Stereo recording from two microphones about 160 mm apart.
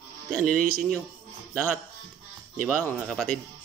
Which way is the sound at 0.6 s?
60° right (ahead or behind).